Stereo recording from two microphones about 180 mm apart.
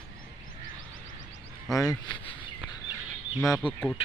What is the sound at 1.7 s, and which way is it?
Speech, 20° left (ahead or behind).